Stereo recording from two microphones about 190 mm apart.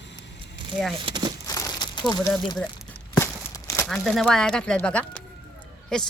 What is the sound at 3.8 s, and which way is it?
Speech, centre (ahead or behind).